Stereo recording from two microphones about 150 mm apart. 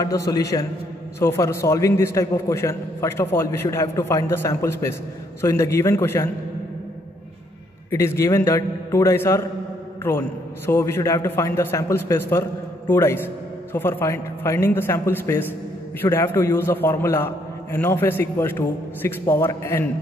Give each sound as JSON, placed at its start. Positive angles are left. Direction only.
{"t": 0.3, "sound": "a man's voice", "side_deg": 20}
{"t": 7.9, "sound": "a man's voice", "side_deg": 20}